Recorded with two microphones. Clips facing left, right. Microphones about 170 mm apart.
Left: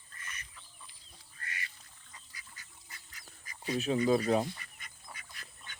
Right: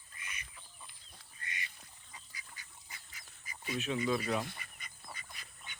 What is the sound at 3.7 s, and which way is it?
Speech, 40° left (ahead or behind).